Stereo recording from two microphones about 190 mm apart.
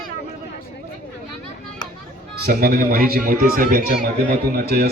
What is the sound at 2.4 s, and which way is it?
A man's voice, 50° right (ahead or behind).